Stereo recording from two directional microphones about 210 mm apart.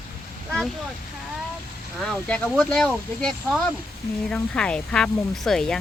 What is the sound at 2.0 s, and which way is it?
Speech, 5° left (ahead or behind).